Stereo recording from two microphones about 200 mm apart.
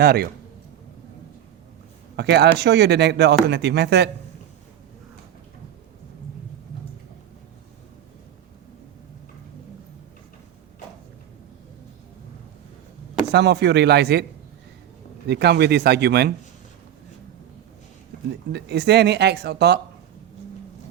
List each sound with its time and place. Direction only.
0.0 s a man's voice: 50° right (ahead or behind)
2.1 s speech: 55° right (ahead or behind)
13.3 s speech: 55° right (ahead or behind)
15.3 s speech: 55° right (ahead or behind)
18.3 s speech: 55° right (ahead or behind)